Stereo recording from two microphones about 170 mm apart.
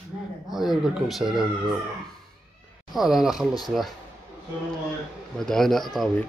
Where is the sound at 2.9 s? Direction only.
Centre (ahead or behind).